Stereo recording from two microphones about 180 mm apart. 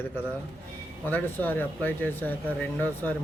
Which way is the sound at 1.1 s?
10° left (ahead or behind).